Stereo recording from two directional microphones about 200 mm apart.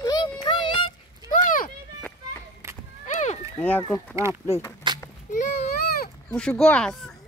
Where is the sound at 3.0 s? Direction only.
35° left (ahead or behind).